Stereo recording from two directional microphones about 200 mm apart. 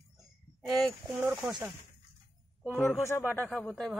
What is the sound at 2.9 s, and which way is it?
Speech, 10° left (ahead or behind).